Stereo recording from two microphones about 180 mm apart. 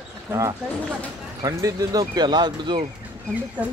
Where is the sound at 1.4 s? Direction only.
20° right (ahead or behind).